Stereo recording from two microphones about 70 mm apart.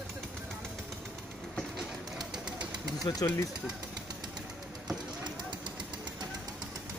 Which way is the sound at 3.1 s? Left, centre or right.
Left.